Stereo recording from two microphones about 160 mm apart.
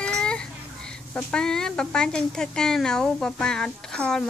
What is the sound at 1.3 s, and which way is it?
Speech, 5° left (ahead or behind).